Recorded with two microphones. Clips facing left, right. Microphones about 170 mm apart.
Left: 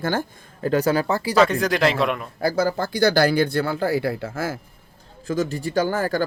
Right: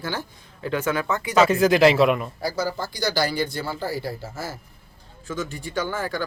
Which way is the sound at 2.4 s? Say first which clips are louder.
Left 5 dB; 55° left (ahead or behind).